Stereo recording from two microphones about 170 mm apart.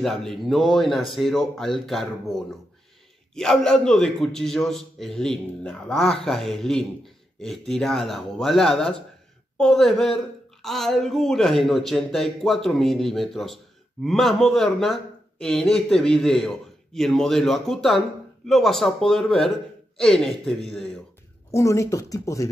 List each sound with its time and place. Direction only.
0.0 s a woman's voice: centre (ahead or behind)
21.5 s speech: 15° left (ahead or behind)